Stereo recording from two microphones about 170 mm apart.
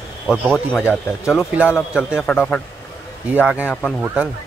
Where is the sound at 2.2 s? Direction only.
10° left (ahead or behind).